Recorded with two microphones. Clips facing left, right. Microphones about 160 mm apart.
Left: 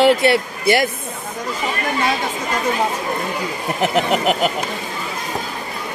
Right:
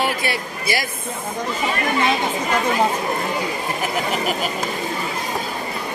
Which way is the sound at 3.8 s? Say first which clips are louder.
Left 8 dB; 75° left (ahead or behind).